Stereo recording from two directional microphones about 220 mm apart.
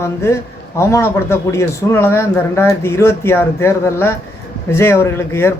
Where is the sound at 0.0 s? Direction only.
10° left (ahead or behind).